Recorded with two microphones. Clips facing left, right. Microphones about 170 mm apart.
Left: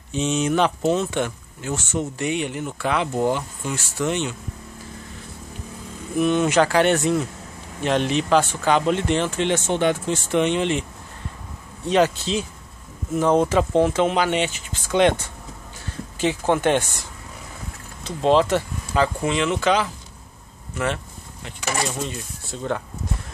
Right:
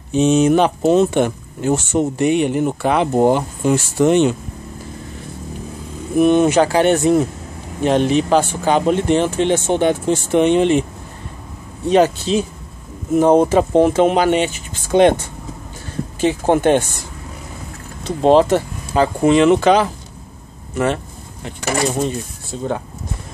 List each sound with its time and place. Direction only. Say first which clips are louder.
0.1 s speech: right 9 dB; 50° right (ahead or behind)
1.2 s speech: right 9 dB; 60° right (ahead or behind)
6.1 s speech: right 7 dB; 55° right (ahead or behind)
6.4 s speech: right 4 dB; 25° right (ahead or behind)
7.1 s speech: right 7 dB; 45° right (ahead or behind)
11.9 s speech: right 5 dB; 45° right (ahead or behind)
14.1 s speech: right 6 dB; 40° right (ahead or behind)
18.0 s speech: right 6 dB; 50° right (ahead or behind)